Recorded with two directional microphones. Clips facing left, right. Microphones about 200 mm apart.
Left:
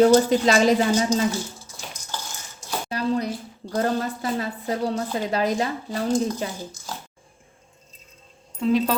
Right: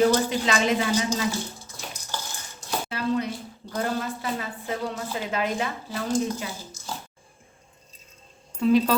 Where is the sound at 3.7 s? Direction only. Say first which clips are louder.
Left 4 dB; 40° left (ahead or behind).